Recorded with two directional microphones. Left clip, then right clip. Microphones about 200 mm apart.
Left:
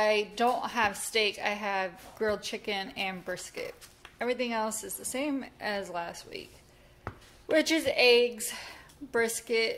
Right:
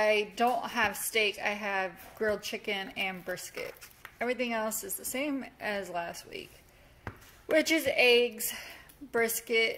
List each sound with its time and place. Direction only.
0.0 s a woman's voice: 10° right (ahead or behind)
7.4 s a woman's voice: 10° right (ahead or behind)